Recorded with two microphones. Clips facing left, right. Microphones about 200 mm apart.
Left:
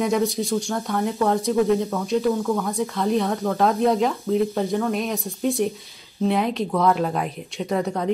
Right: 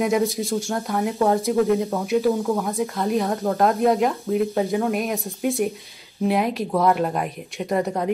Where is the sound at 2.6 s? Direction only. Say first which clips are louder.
Even; centre (ahead or behind).